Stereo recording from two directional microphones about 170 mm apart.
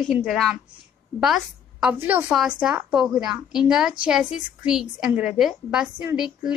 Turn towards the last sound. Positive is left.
turn(degrees=-10)  # may be behind; listen again after turning